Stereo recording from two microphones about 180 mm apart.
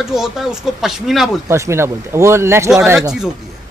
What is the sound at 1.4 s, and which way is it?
Speech, 15° right (ahead or behind).